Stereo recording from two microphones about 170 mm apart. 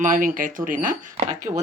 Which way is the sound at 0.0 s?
50° right (ahead or behind).